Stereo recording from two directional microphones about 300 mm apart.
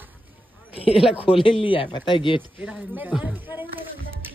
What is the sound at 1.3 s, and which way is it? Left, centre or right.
A man's voice, centre.